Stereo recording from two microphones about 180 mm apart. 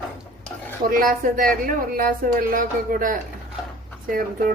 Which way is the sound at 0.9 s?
50° right (ahead or behind).